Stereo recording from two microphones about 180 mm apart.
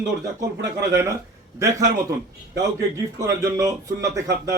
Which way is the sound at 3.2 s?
20° right (ahead or behind).